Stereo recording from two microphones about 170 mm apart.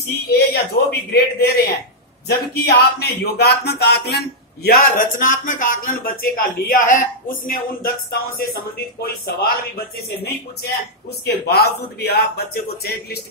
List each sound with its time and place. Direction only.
0.1 s speech: 70° left (ahead or behind)
4.6 s speech: 60° left (ahead or behind)